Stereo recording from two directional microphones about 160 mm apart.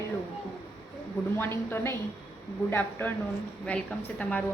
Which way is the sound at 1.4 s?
15° left (ahead or behind).